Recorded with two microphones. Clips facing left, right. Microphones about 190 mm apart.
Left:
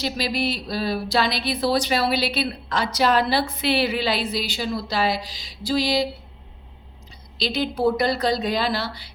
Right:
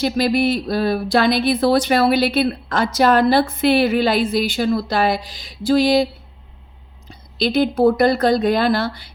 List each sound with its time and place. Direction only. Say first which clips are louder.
0.0 s speech: right 8 dB; 55° right (ahead or behind)
7.1 s speech: right 8 dB; 55° right (ahead or behind)